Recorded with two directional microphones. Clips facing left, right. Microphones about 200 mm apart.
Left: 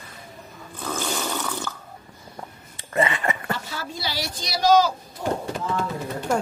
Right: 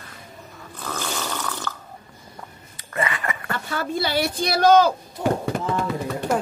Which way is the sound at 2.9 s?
25° left (ahead or behind).